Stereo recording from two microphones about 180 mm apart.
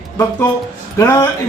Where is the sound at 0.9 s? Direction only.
15° left (ahead or behind).